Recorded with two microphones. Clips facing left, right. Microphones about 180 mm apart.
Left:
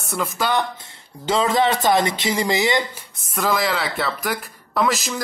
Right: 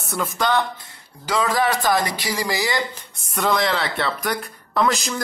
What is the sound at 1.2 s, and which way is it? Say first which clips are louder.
Speech: left 2 dB; 25° left (ahead or behind).